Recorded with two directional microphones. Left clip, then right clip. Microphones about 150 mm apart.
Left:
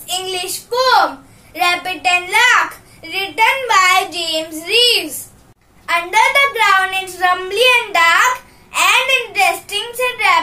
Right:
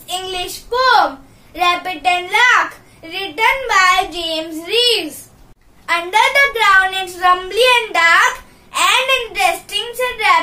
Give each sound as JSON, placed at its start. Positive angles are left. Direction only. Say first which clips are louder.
{"t": 0.0, "sound": "child singing", "louder": "left 1 dB", "side_deg": -15}
{"t": 2.0, "sound": "a child's voice", "louder": "left 2 dB", "side_deg": -15}